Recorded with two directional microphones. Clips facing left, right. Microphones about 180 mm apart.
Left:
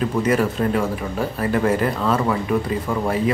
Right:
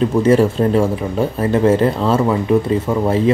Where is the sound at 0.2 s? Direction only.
30° right (ahead or behind).